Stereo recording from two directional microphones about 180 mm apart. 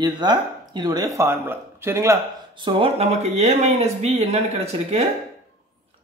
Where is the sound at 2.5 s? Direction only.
30° right (ahead or behind).